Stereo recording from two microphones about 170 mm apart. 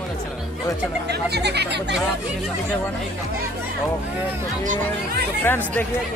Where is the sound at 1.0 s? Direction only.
75° right (ahead or behind).